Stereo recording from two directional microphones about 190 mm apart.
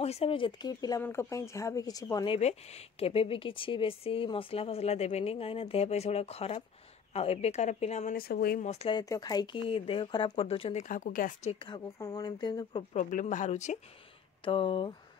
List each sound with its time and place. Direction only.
0.0 s speech: 30° left (ahead or behind); by 8.6 s 55° left (ahead or behind)
8.6 s speech: 30° left (ahead or behind); by 11.5 s 45° left (ahead or behind)
11.6 s speech: 20° left (ahead or behind)
12.9 s speech: 40° left (ahead or behind)
14.4 s speech: 25° left (ahead or behind)